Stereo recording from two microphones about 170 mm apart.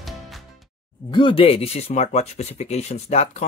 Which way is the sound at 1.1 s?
30° left (ahead or behind).